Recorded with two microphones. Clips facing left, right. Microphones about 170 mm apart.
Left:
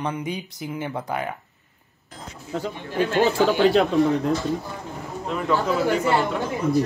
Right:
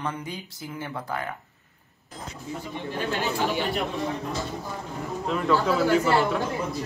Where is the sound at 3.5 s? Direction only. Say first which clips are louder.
Left 9 dB; 80° left.